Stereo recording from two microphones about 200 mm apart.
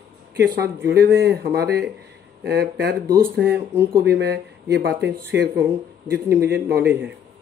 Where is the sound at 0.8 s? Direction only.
55° right (ahead or behind).